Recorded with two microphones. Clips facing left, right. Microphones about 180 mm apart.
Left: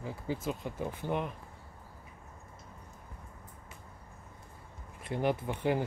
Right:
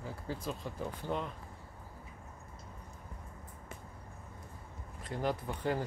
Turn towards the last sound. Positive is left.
turn(degrees=10)  # may be behind; listen again after turning